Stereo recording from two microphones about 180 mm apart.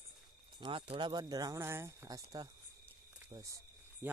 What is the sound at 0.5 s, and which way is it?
Speech, 25° right (ahead or behind).